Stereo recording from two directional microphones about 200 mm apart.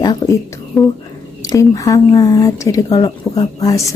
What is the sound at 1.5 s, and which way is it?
Speech, 15° left (ahead or behind).